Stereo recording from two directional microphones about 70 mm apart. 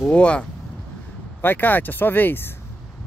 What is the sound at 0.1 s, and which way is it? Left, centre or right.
Speech, centre.